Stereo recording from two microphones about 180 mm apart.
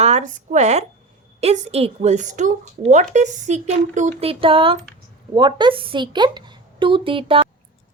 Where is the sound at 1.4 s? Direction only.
35° right (ahead or behind).